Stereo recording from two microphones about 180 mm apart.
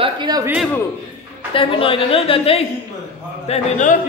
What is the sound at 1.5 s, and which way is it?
A woman's voice, 30° left (ahead or behind).